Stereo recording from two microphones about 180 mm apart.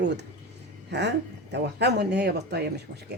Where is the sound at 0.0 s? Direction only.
70° right (ahead or behind).